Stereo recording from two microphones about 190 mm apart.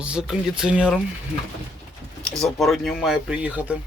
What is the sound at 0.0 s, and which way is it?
Speech, 5° right (ahead or behind).